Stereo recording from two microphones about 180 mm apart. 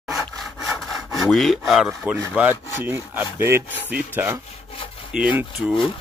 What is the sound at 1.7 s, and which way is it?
Speech, centre (ahead or behind).